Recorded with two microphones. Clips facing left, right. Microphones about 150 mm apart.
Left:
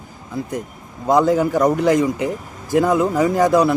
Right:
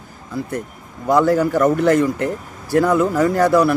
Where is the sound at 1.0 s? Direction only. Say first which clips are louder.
Even; 20° left (ahead or behind).